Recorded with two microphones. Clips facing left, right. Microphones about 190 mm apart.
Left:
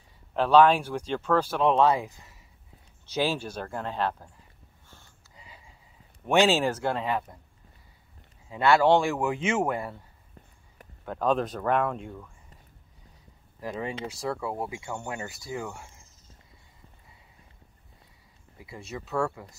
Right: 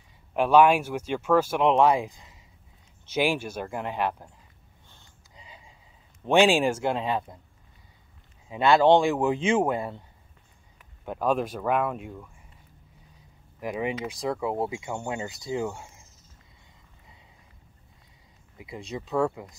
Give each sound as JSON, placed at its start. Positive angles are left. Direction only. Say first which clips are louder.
{"t": 0.4, "sound": "speech", "louder": "right 1 dB", "side_deg": -10}
{"t": 4.8, "sound": "a sound", "louder": "left 2 dB", "side_deg": -20}
{"t": 6.2, "sound": "speech", "louder": "right 2 dB", "side_deg": -15}
{"t": 8.5, "sound": "speech", "louder": "right 2 dB", "side_deg": -15}
{"t": 11.1, "sound": "speech", "louder": "even", "side_deg": -10}
{"t": 13.6, "sound": "speech", "louder": "right 4 dB", "side_deg": -15}
{"t": 18.6, "sound": "speech", "louder": "right 3 dB", "side_deg": -15}